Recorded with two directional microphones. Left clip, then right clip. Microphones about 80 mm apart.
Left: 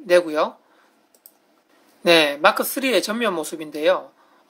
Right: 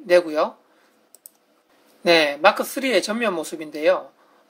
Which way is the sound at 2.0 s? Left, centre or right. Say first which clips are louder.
Left 1 dB; left.